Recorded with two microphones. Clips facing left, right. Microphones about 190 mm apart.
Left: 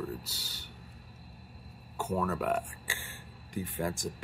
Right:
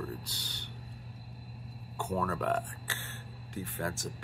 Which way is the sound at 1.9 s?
5° left (ahead or behind).